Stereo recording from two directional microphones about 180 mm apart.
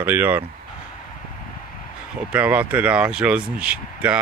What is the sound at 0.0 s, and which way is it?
Speech, 10° right (ahead or behind).